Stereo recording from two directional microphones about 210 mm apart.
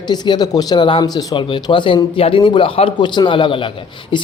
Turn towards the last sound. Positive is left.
turn(degrees=20)  # may be behind; listen again after turning